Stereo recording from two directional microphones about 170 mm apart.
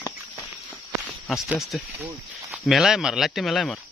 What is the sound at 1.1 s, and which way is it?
Speech, centre (ahead or behind).